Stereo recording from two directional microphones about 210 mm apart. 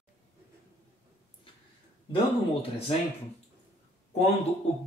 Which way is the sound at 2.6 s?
30° left (ahead or behind).